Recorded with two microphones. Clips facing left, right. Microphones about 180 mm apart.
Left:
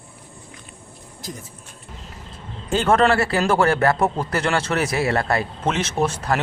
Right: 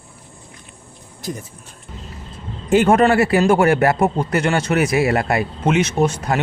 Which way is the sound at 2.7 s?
15° right (ahead or behind).